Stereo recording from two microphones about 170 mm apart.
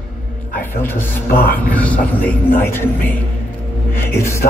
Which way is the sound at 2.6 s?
15° left (ahead or behind).